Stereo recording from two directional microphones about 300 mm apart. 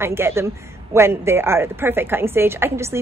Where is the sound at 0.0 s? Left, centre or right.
Centre.